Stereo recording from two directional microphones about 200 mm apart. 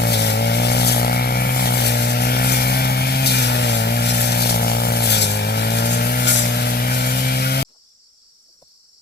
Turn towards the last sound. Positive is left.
turn(degrees=50)  # may be behind; listen again after turning